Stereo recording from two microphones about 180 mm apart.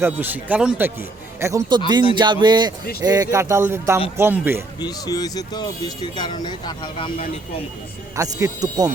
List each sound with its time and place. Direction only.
0.0 s speech: 10° right (ahead or behind)
4.8 s speech: 20° left (ahead or behind)
8.1 s speech: 15° right (ahead or behind)